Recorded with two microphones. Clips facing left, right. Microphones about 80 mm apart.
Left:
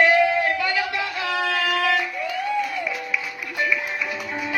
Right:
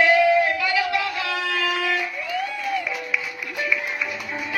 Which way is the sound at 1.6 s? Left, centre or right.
Left.